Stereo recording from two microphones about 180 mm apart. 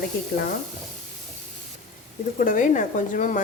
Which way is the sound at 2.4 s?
45° left (ahead or behind).